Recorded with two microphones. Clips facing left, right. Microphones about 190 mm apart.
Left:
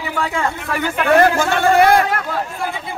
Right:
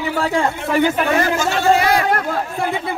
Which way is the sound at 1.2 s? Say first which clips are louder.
Left 4 dB; 55° left (ahead or behind).